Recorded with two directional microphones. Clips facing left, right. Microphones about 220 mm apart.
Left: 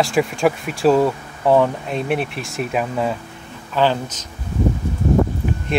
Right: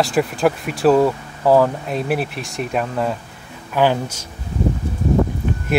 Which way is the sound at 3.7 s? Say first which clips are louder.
Right 1 dB; 10° right (ahead or behind).